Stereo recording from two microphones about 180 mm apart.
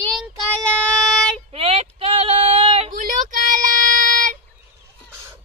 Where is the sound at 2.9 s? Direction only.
45° right (ahead or behind).